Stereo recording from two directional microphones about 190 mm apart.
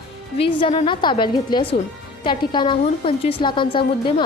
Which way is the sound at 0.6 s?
30° left (ahead or behind).